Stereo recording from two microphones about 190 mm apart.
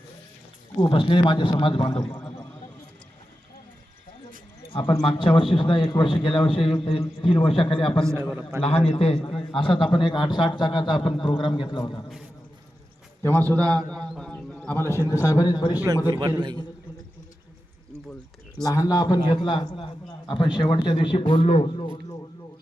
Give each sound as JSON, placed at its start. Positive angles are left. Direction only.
{"t": 0.8, "sound": "a man's voice", "side_deg": 25}
{"t": 2.0, "sound": "a man's voice", "side_deg": 5}
{"t": 4.7, "sound": "a man's voice", "side_deg": 25}
{"t": 8.0, "sound": "a man's voice", "side_deg": -15}
{"t": 8.6, "sound": "a man's voice", "side_deg": 30}
{"t": 13.2, "sound": "a man's voice", "side_deg": 10}
{"t": 16.1, "sound": "a man's voice", "side_deg": -25}
{"t": 18.6, "sound": "a man's voice", "side_deg": 20}